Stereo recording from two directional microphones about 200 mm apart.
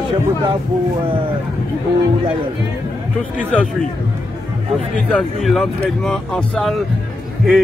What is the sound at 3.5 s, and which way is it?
Speech, centre (ahead or behind).